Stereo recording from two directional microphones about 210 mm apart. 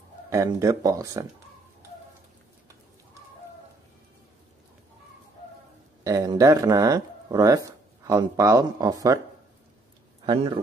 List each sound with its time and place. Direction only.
0.3 s speech: 15° right (ahead or behind)
6.0 s speech: 15° right (ahead or behind)
10.2 s speech: 20° right (ahead or behind)